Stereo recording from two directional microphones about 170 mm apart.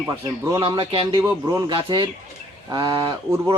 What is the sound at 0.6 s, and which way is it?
Speech, 35° right (ahead or behind).